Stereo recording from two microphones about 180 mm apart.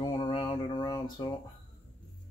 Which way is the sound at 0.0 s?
25° left (ahead or behind).